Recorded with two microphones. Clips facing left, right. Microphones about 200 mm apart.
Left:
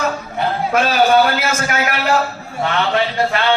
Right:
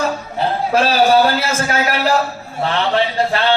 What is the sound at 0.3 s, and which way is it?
A man's voice, 30° right (ahead or behind).